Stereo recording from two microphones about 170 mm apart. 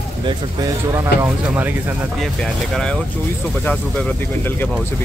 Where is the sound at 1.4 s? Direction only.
10° right (ahead or behind).